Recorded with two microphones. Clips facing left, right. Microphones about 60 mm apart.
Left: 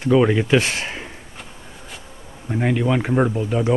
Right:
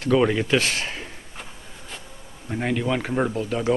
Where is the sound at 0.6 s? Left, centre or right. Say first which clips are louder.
Left 1 dB; left.